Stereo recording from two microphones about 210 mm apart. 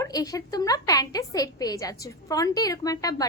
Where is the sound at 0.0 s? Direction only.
15° left (ahead or behind).